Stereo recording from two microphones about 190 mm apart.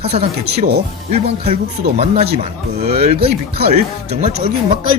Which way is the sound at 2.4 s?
35° right (ahead or behind).